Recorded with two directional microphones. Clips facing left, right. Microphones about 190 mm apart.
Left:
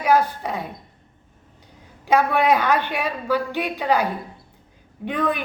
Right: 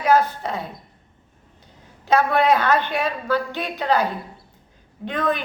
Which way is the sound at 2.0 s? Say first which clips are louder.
Even; 15° left (ahead or behind).